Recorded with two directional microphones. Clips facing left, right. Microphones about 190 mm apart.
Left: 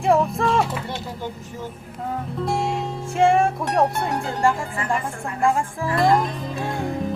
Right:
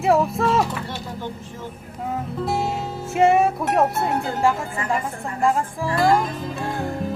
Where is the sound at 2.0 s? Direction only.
5° right (ahead or behind).